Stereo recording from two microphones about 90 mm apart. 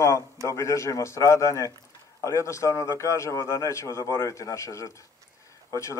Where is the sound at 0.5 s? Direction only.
35° left (ahead or behind).